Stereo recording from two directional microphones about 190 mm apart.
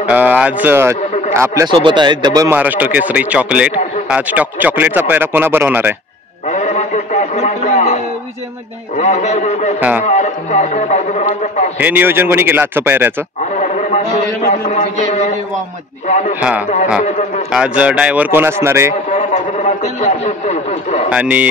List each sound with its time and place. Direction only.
0.0 s a man's voice: 10° right (ahead or behind)
6.5 s a sound: 35° left (ahead or behind)
8.9 s a man's voice: 35° left (ahead or behind)
9.8 s a man's voice: 10° right (ahead or behind)
10.0 s a man's voice: 35° left (ahead or behind)
11.8 s a man's voice: 10° right (ahead or behind)
13.4 s a man's voice: 40° left (ahead or behind)
16.3 s a man's voice: 10° right (ahead or behind)
19.1 s a man's voice: 35° left (ahead or behind)
21.1 s a man's voice: 10° right (ahead or behind)